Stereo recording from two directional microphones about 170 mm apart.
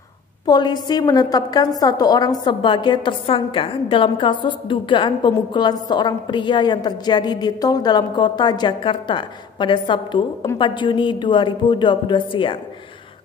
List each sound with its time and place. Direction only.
0.5 s a woman's voice: 25° left (ahead or behind)